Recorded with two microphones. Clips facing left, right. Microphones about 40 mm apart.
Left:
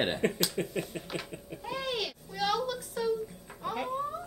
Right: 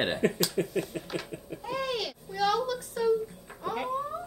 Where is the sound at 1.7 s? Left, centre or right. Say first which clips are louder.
Right 2 dB; left.